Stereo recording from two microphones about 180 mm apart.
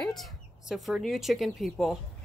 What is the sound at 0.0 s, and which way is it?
Speech, centre (ahead or behind).